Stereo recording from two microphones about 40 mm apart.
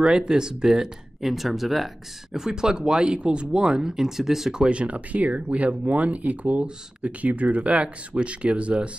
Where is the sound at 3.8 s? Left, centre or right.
Centre.